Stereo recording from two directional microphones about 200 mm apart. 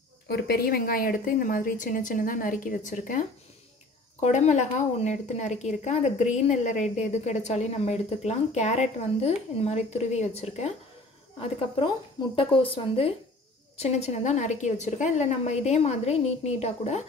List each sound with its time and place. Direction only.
0.3 s a woman's voice: 50° left (ahead or behind); by 10.7 s 30° left (ahead or behind)
12.4 s a woman's voice: 25° left (ahead or behind)